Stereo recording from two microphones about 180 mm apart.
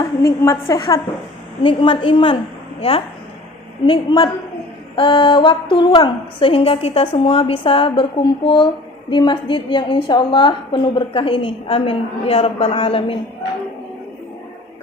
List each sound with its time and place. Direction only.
0.0 s a woman's voice: 20° left (ahead or behind)
3.8 s a woman's voice: 25° left (ahead or behind)